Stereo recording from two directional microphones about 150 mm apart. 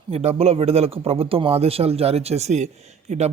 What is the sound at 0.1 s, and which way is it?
Speech, 45° right (ahead or behind).